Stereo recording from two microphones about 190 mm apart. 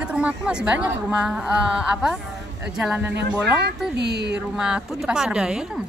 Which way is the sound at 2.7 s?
5° right (ahead or behind).